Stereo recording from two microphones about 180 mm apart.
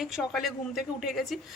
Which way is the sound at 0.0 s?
Centre (ahead or behind).